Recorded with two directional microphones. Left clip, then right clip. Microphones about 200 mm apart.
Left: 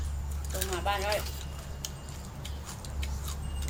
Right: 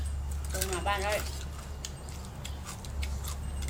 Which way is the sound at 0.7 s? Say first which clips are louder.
Left 1 dB; 15° left (ahead or behind).